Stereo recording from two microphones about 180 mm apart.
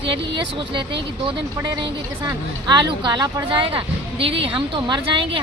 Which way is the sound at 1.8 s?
25° right (ahead or behind).